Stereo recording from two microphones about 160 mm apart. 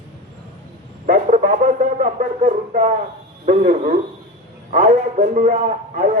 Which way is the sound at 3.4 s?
55° right (ahead or behind).